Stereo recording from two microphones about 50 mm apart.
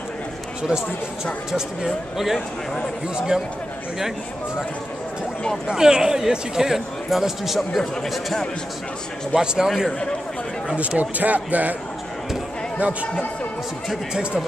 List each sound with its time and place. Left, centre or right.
0.6 s speech: centre
2.1 s speech: centre
5.7 s speech: centre
9.3 s speech: centre
11.0 s speech: right